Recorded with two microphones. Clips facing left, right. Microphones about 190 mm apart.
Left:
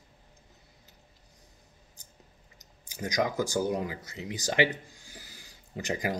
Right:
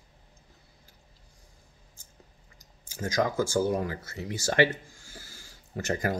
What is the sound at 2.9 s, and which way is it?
Speech, 15° left (ahead or behind).